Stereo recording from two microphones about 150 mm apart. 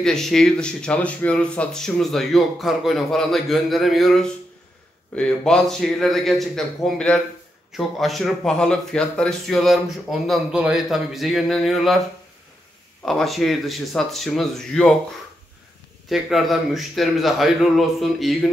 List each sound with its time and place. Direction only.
0.0 s speech: 5° left (ahead or behind)
13.0 s speech: centre (ahead or behind)
16.1 s speech: centre (ahead or behind)